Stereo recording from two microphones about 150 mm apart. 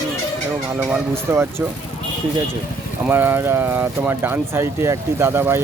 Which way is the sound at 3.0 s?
15° right (ahead or behind).